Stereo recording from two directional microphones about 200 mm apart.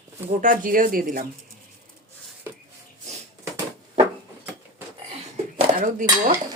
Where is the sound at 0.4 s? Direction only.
45° right (ahead or behind).